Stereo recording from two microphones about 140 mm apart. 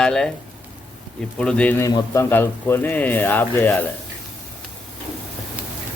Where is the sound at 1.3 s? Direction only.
5° left (ahead or behind).